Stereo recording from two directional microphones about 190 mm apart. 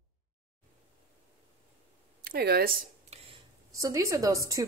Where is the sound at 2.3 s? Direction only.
55° right (ahead or behind).